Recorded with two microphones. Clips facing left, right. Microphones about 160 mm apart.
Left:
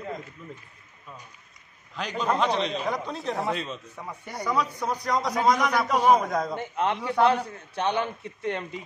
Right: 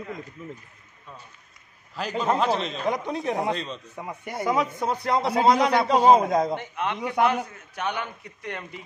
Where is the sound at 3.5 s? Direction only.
5° left (ahead or behind).